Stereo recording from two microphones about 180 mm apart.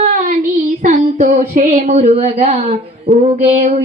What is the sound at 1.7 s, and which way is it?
Speech, 35° right (ahead or behind).